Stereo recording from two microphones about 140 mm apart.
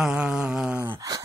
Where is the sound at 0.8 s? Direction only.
20° right (ahead or behind).